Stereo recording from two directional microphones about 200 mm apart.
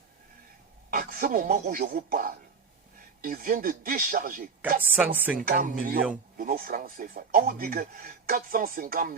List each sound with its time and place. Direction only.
0.9 s speech: 45° right (ahead or behind)
4.8 s speech: 10° right (ahead or behind)
5.4 s speech: 40° right (ahead or behind)